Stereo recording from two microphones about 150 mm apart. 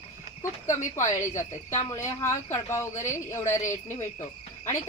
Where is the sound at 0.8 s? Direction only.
20° left (ahead or behind).